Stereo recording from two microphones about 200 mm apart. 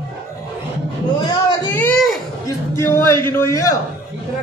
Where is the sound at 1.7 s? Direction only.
10° left (ahead or behind).